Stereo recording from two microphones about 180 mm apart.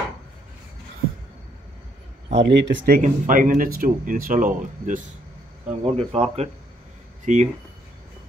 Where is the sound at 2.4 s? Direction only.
75° right (ahead or behind).